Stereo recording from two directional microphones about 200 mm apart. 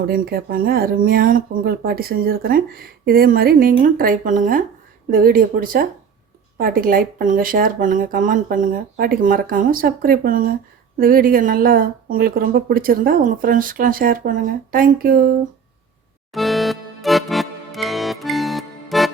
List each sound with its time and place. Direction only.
0.1 s speech: 50° right (ahead or behind)
16.3 s music: centre (ahead or behind)